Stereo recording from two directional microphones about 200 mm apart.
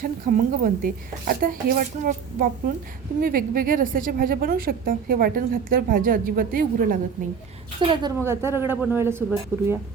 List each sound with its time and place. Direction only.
0.0 s a woman's voice: 45° right (ahead or behind)
7.8 s a woman's voice: 25° right (ahead or behind)
8.2 s a man's voice: 15° right (ahead or behind)